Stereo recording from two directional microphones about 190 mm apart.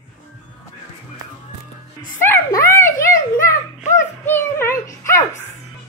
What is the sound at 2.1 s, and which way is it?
Speech, 15° left (ahead or behind).